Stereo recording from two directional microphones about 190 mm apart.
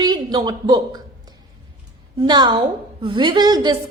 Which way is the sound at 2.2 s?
20° right (ahead or behind).